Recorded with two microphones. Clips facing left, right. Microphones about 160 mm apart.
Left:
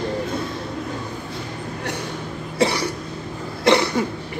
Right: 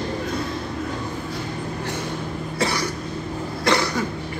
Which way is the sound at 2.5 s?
30° left (ahead or behind).